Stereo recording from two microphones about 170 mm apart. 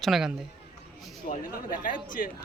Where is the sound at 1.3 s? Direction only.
55° left (ahead or behind).